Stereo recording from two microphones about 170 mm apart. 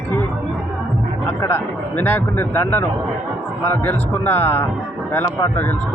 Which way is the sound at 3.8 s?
10° left (ahead or behind).